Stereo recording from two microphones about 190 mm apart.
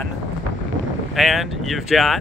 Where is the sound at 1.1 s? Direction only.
Centre (ahead or behind).